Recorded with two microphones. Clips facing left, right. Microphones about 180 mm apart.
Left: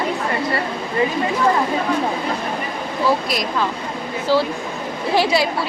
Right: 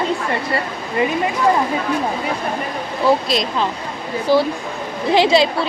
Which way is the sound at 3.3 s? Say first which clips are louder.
Right 2 dB; 25° right (ahead or behind).